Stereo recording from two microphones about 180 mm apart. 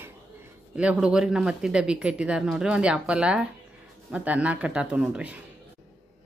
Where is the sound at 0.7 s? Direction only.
5° right (ahead or behind).